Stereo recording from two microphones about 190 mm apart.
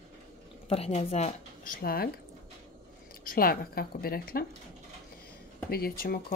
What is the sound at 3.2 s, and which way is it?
Speech, 50° left (ahead or behind).